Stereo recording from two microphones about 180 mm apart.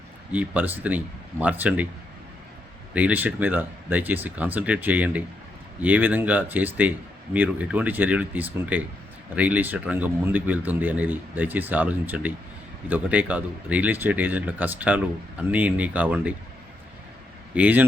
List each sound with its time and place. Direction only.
0.3 s speech: 10° right (ahead or behind)
2.9 s speech: 10° right (ahead or behind)
17.5 s speech: 10° right (ahead or behind)